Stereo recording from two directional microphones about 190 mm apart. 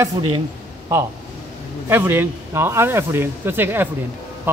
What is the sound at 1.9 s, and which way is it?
Speech, 10° right (ahead or behind).